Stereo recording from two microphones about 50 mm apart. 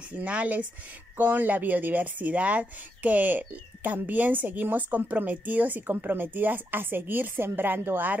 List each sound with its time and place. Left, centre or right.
0.2 s speech: right
1.1 s a woman's voice: right